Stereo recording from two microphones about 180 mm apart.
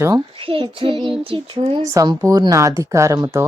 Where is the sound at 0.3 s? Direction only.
30° right (ahead or behind).